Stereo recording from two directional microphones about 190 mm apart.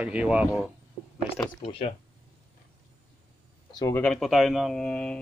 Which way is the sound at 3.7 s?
20° left (ahead or behind).